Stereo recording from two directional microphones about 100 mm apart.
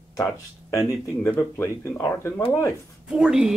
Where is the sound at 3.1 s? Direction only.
5° right (ahead or behind).